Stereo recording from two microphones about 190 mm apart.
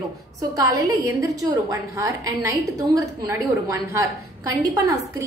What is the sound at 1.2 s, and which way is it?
A woman's voice, 15° right (ahead or behind).